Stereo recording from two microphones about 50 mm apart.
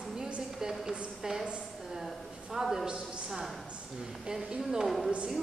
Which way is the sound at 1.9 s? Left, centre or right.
Centre.